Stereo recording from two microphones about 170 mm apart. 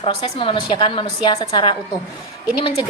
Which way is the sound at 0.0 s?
30° left (ahead or behind).